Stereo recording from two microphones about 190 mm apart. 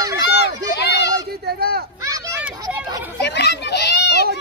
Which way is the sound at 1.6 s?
55° right (ahead or behind).